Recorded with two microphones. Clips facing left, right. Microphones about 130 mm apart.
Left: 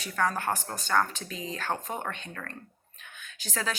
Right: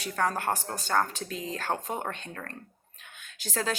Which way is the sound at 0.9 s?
35° right (ahead or behind).